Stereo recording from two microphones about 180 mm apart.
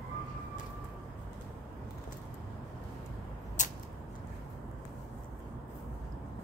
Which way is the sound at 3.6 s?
45° left (ahead or behind).